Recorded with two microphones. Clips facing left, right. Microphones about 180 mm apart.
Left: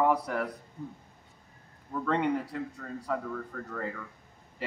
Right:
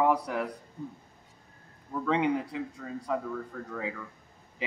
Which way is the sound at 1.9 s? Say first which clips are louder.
Right 1 dB; 5° right (ahead or behind).